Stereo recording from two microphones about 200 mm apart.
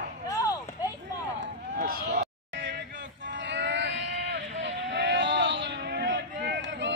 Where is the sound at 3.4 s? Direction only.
60° right (ahead or behind).